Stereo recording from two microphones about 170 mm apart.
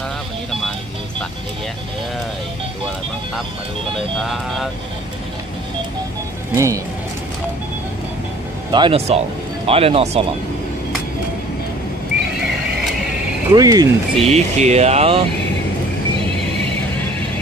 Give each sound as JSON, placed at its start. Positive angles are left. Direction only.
{"t": 4.2, "sound": "speech", "side_deg": 0}
{"t": 6.5, "sound": "speech", "side_deg": -15}
{"t": 8.7, "sound": "speech", "side_deg": -30}
{"t": 13.5, "sound": "speech", "side_deg": -20}
{"t": 14.1, "sound": "speech", "side_deg": -40}